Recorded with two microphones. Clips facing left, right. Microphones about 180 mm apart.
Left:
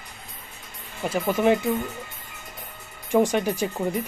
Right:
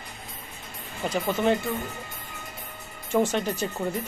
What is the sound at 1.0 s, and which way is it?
Speech, 10° left (ahead or behind).